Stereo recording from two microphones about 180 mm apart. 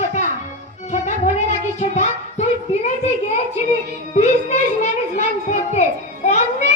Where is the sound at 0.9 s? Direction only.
40° left (ahead or behind).